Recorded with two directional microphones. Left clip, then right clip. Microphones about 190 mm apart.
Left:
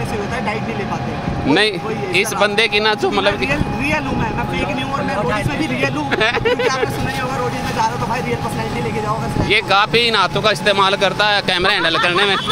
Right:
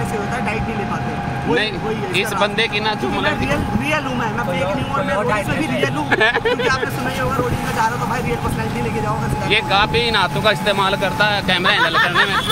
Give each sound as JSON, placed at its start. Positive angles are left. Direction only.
{"t": 2.1, "sound": "speech", "side_deg": 25}
{"t": 5.8, "sound": "speech", "side_deg": 5}
{"t": 9.5, "sound": "speech", "side_deg": 30}